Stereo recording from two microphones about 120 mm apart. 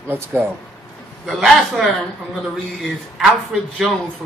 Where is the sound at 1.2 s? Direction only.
Centre (ahead or behind).